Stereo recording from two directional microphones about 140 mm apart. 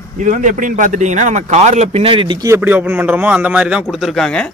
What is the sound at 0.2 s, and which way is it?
Speech, 65° right (ahead or behind).